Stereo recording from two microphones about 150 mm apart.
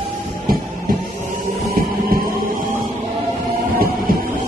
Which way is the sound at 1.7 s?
75° right (ahead or behind).